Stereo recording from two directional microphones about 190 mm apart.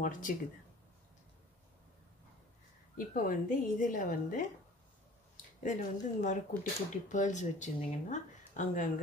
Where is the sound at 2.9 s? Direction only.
45° left (ahead or behind).